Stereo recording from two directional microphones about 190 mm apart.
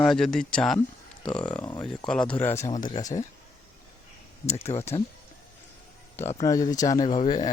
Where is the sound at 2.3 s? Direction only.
10° left (ahead or behind).